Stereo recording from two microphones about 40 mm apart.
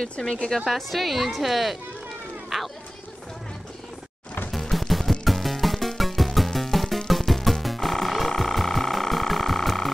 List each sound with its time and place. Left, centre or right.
0.7 s a woman's voice: centre
4.5 s music: centre